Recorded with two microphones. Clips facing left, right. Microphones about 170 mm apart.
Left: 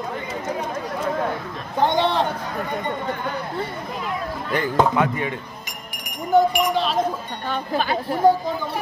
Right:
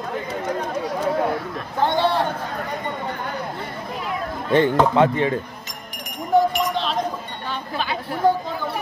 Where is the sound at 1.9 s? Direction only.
20° left (ahead or behind).